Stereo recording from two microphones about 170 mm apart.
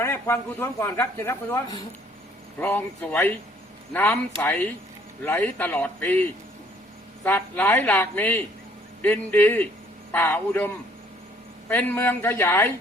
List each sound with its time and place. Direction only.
0.0 s speech: 15° left (ahead or behind)
2.6 s speech: 10° left (ahead or behind)
7.3 s speech: 10° left (ahead or behind)
11.7 s speech: 10° left (ahead or behind)